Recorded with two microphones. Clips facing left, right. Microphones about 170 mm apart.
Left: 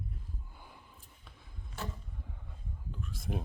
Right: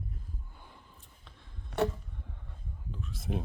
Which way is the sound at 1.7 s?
70° right (ahead or behind).